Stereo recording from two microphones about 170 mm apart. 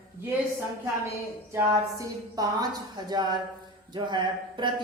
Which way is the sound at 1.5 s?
20° right (ahead or behind).